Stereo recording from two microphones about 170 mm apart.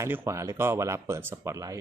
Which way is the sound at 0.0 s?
15° right (ahead or behind).